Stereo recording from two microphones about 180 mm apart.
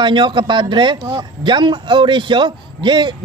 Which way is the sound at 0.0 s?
25° right (ahead or behind).